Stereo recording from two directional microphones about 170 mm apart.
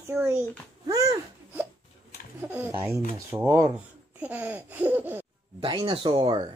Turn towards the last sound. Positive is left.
turn(degrees=-30)  # may be behind; listen again after turning